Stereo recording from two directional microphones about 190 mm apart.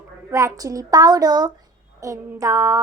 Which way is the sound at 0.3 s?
15° right (ahead or behind).